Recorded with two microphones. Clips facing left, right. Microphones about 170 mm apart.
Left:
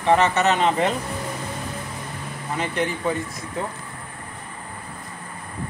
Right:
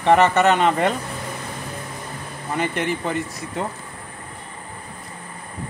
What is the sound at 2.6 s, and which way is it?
Speech, 60° right (ahead or behind).